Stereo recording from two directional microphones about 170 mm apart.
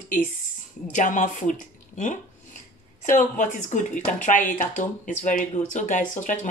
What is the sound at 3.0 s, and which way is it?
Speech, 50° left (ahead or behind).